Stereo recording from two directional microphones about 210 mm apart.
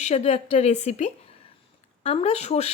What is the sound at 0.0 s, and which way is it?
Speech, 30° left (ahead or behind).